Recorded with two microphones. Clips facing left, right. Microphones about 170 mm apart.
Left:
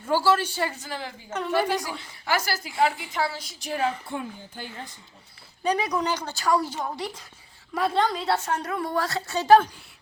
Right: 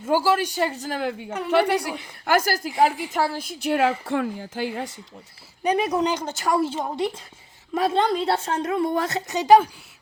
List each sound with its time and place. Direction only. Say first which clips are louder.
0.1 s speech: right 2 dB; 15° right (ahead or behind)
0.8 s a woman's voice: right 8 dB; 50° right (ahead or behind)
1.5 s a woman's voice: right 5 dB; 70° right (ahead or behind)
2.2 s a woman's voice: right 6 dB; 50° right (ahead or behind); by 3.9 s 75° right (ahead or behind)
4.0 s speech: right 8 dB; 90° right
5.6 s a woman's voice: right 4 dB; 25° right (ahead or behind)